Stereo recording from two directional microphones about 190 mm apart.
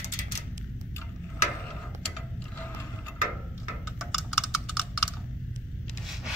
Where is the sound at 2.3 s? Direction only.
10° left (ahead or behind).